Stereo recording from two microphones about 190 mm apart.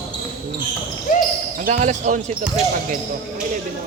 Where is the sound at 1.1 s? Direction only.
45° left (ahead or behind).